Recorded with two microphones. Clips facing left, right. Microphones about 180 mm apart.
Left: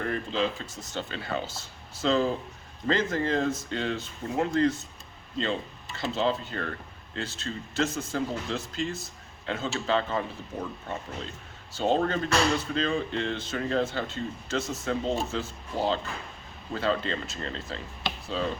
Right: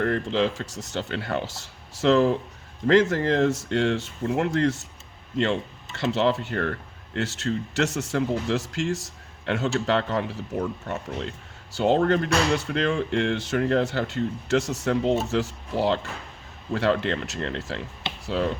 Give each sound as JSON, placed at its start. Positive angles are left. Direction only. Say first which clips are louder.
{"t": 0.0, "sound": "speech", "louder": "right 5 dB", "side_deg": -75}